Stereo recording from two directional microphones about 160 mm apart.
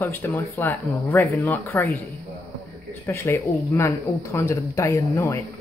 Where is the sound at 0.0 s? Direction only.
15° left (ahead or behind).